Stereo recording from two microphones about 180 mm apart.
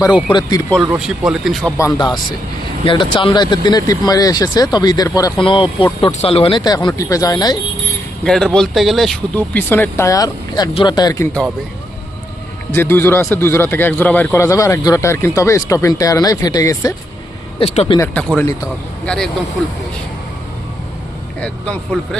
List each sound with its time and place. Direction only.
0.9 s speech: 5° right (ahead or behind)
1.8 s speech: 25° left (ahead or behind)
6.7 s speech: 20° left (ahead or behind)
8.2 s a man's voice: 5° left (ahead or behind); by 11.3 s 20° left (ahead or behind)
12.7 s a man's voice: 10° left (ahead or behind)
17.6 s speech: 35° left (ahead or behind)
18.1 s a man's voice: 5° left (ahead or behind)
21.9 s a man's voice: 5° left (ahead or behind)